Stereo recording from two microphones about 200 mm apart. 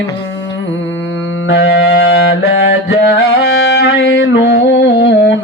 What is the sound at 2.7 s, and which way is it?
Music, 55° left (ahead or behind).